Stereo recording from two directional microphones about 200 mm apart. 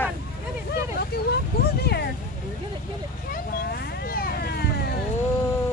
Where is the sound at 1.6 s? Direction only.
50° left (ahead or behind).